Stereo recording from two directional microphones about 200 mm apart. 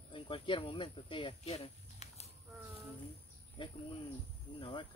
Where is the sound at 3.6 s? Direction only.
25° left (ahead or behind).